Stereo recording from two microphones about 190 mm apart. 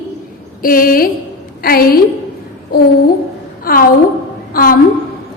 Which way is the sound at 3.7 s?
50° left (ahead or behind).